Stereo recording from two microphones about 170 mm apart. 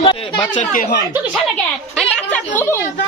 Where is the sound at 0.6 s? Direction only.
55° left (ahead or behind).